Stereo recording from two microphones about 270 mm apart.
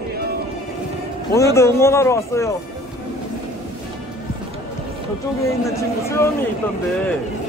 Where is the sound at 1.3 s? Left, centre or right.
Centre.